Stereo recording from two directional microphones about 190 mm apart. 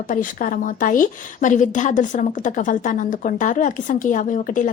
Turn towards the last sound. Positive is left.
turn(degrees=45)  # may be behind; listen again after turning